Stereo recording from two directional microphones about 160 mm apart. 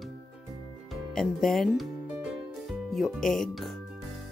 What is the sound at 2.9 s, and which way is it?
Speech, centre (ahead or behind).